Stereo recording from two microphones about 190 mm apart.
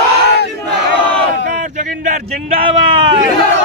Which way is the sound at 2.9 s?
25° right (ahead or behind).